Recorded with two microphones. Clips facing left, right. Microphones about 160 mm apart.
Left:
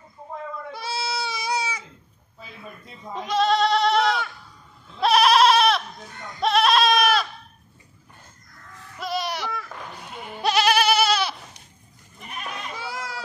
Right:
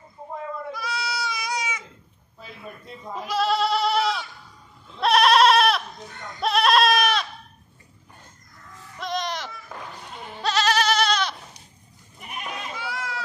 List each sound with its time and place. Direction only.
0.7 s goat: 30° left (ahead or behind)
2.4 s goat: centre (ahead or behind)
8.9 s bleat: 5° left (ahead or behind)
10.2 s goat: 10° left (ahead or behind)
12.7 s children playing: 35° left (ahead or behind)